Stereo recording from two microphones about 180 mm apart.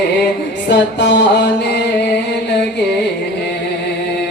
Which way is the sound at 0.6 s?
75° left (ahead or behind).